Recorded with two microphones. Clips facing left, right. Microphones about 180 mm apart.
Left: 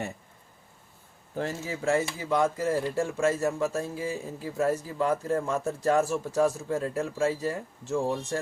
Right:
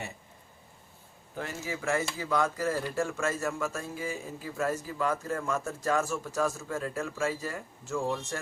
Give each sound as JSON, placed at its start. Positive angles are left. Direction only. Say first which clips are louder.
{"t": 1.4, "sound": "speech", "louder": "left 4 dB", "side_deg": 35}
{"t": 3.4, "sound": "speech", "louder": "left 5 dB", "side_deg": 30}